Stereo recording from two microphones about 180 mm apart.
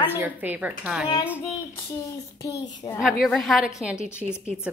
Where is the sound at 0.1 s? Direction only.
10° right (ahead or behind).